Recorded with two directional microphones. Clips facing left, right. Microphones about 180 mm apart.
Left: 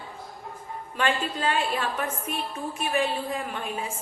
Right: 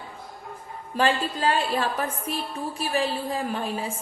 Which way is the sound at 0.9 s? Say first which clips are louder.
Right 3 dB; 35° right (ahead or behind).